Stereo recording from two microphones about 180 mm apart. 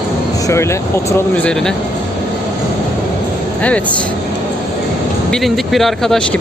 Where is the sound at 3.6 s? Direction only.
5° left (ahead or behind).